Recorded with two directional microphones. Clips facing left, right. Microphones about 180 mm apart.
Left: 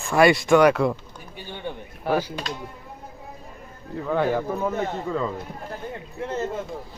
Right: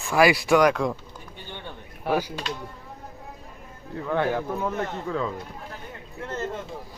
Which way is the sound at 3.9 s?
5° left (ahead or behind).